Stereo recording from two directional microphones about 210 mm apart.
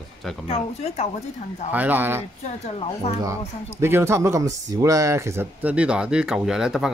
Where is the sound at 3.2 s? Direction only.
15° right (ahead or behind).